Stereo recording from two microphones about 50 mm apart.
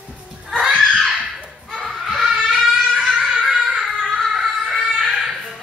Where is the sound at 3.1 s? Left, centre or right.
Centre.